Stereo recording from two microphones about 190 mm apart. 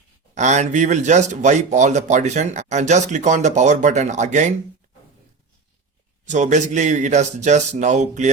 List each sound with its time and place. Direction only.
0.3 s speech: 40° right (ahead or behind)
6.2 s speech: 40° right (ahead or behind)